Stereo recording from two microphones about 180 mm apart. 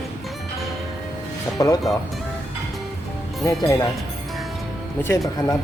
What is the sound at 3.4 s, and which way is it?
Speech, 20° left (ahead or behind).